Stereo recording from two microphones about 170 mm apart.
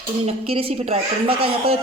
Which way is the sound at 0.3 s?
35° right (ahead or behind).